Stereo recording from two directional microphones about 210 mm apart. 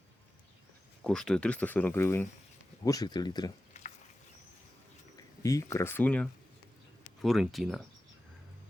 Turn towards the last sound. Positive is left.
turn(degrees=0)  # may be behind; listen again after turning